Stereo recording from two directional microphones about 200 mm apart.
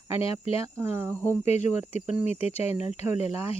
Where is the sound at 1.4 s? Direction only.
35° left (ahead or behind).